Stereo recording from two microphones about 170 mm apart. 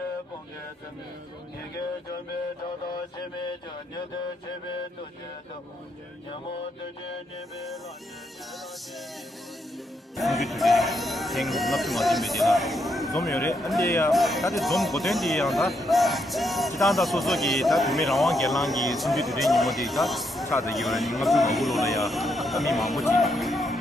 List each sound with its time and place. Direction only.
10.1 s speech: centre (ahead or behind)
13.7 s speech: 20° left (ahead or behind)
14.1 s speech: centre (ahead or behind)
23.1 s music: centre (ahead or behind)